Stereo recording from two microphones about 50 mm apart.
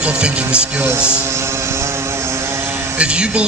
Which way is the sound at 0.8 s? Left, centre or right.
Right.